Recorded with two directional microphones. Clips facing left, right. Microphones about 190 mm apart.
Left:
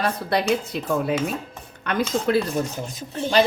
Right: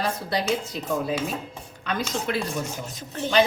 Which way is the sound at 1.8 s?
60° left (ahead or behind).